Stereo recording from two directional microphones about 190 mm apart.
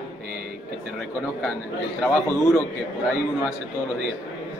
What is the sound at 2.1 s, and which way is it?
Speech, 15° left (ahead or behind).